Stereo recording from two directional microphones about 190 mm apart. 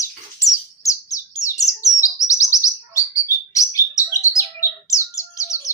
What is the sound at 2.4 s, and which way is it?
Bird, 15° left (ahead or behind).